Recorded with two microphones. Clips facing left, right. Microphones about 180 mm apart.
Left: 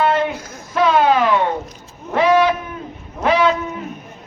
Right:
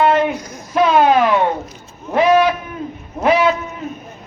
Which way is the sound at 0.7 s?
15° right (ahead or behind).